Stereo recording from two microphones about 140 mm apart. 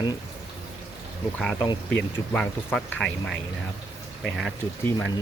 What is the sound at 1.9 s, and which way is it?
Speech, 5° left (ahead or behind).